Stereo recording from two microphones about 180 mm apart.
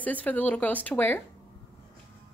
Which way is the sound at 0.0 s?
10° left (ahead or behind).